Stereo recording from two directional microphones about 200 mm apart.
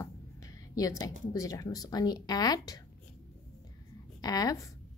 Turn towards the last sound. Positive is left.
turn(degrees=15)  # may be behind; listen again after turning